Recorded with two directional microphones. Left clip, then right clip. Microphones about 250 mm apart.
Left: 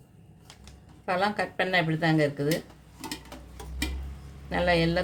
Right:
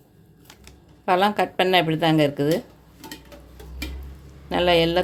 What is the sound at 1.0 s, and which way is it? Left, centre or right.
Speech, right.